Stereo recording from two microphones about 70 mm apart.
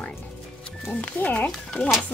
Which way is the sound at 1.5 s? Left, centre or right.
Centre.